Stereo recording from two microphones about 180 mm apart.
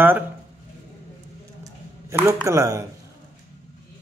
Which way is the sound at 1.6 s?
15° right (ahead or behind).